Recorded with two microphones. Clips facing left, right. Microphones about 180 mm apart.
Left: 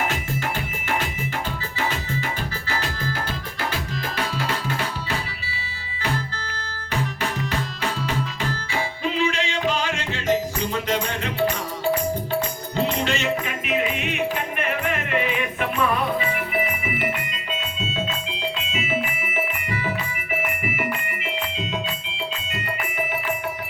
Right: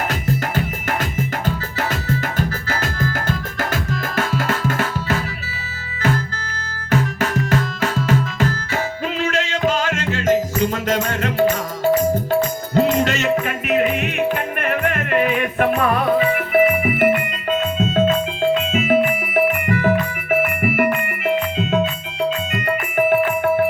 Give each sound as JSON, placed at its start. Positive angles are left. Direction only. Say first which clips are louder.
{"t": 0.1, "sound": "music", "louder": "right 5 dB", "side_deg": -40}
{"t": 6.9, "sound": "music", "louder": "right 7 dB", "side_deg": -45}
{"t": 12.7, "sound": "music", "louder": "right 7 dB", "side_deg": -45}